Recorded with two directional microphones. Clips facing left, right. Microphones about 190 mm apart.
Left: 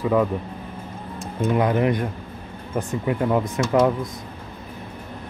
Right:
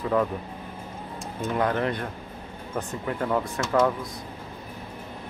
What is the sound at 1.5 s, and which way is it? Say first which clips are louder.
Speech: left 5 dB; 10° left (ahead or behind).